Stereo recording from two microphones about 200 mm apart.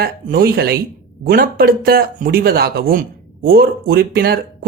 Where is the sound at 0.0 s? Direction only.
50° right (ahead or behind).